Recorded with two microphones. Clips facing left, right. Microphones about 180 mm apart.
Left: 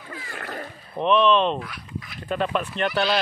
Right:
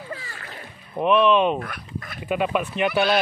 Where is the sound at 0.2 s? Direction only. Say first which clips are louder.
Left 6 dB; 50° left (ahead or behind).